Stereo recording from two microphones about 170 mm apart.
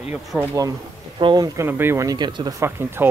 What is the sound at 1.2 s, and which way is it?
Speech, 25° right (ahead or behind).